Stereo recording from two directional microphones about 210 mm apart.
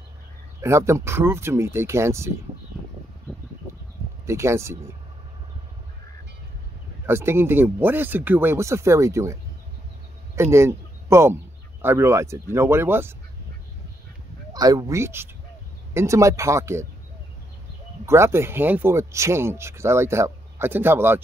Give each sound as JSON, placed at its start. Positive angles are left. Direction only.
{"t": 0.6, "sound": "speech", "side_deg": -15}
{"t": 4.3, "sound": "speech", "side_deg": -15}
{"t": 7.1, "sound": "speech", "side_deg": -10}
{"t": 14.5, "sound": "speech", "side_deg": -20}
{"t": 18.0, "sound": "speech", "side_deg": -15}